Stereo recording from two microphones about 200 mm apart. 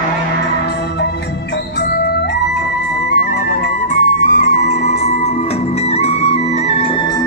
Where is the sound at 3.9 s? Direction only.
35° left (ahead or behind).